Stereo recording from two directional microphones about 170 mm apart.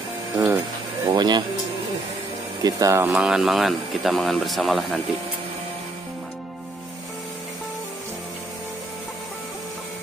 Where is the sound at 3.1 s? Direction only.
5° right (ahead or behind).